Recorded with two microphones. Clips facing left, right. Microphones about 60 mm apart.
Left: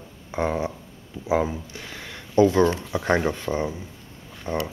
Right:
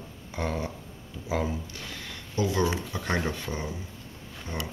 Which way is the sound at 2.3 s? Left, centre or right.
Left.